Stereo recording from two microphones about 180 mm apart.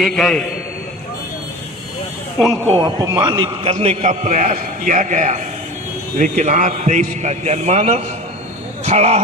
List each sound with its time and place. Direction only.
0.0 s speech: centre (ahead or behind)
2.3 s speech: 5° left (ahead or behind)
2.8 s a man's voice: 20° right (ahead or behind); by 9.2 s 35° right (ahead or behind)